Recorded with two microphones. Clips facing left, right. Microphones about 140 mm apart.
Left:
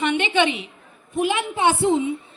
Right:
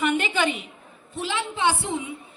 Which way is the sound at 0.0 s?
Centre (ahead or behind).